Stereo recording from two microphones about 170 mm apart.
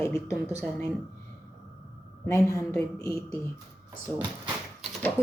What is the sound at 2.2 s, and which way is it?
Speech, 15° left (ahead or behind).